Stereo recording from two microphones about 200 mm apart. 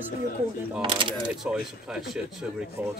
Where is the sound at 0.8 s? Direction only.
25° right (ahead or behind).